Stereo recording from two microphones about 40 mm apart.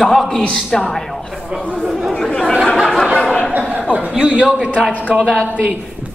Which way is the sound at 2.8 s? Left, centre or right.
Centre.